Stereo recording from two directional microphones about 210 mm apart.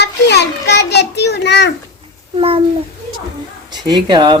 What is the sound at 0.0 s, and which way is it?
A child's voice, 55° left (ahead or behind).